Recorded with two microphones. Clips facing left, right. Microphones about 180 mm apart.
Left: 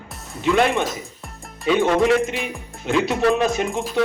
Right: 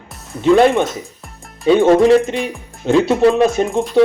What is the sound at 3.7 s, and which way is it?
Music, centre (ahead or behind).